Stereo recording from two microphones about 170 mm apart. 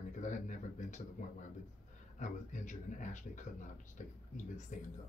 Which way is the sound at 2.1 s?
45° left (ahead or behind).